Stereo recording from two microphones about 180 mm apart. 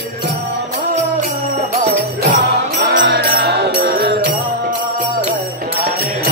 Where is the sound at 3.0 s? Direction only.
60° right (ahead or behind).